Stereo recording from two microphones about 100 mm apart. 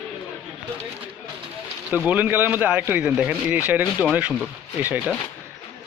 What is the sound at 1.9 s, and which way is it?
Speech, 15° right (ahead or behind).